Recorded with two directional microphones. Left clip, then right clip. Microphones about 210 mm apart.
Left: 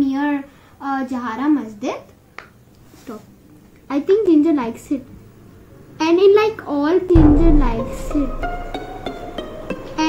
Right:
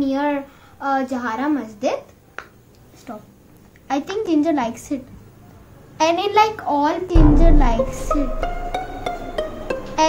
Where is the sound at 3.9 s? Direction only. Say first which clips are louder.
Left 6 dB; 35° right (ahead or behind).